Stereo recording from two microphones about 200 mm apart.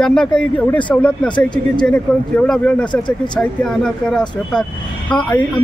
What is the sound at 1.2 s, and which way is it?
Speech, 25° left (ahead or behind).